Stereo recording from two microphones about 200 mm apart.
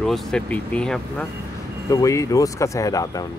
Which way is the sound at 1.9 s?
15° left (ahead or behind).